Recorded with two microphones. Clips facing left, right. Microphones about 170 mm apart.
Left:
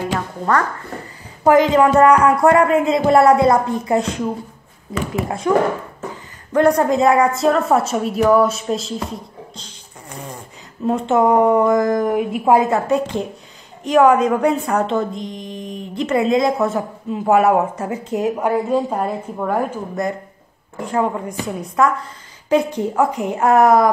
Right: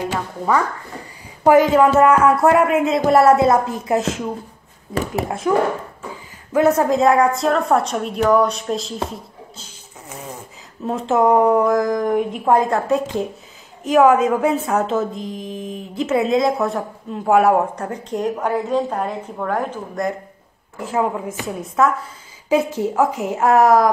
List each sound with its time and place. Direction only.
0.1 s a sound: 5° right (ahead or behind)
1.4 s speech: 10° right (ahead or behind)
5.5 s speech: 5° right (ahead or behind)
10.9 s speech: centre (ahead or behind)